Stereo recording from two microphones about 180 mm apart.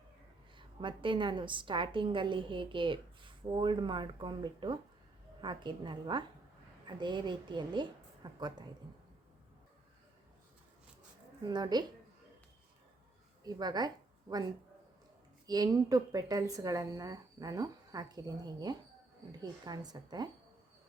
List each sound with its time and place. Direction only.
0.5 s a woman's voice: 25° right (ahead or behind)
11.4 s a woman's voice: 25° right (ahead or behind)
13.4 s a woman's voice: 25° right (ahead or behind)
15.4 s a woman's voice: 20° right (ahead or behind)